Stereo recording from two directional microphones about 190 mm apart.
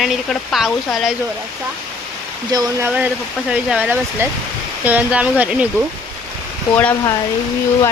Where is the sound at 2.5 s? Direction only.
20° right (ahead or behind).